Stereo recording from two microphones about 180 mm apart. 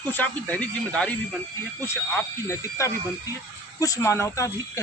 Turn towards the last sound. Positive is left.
turn(degrees=15)  # may be behind; listen again after turning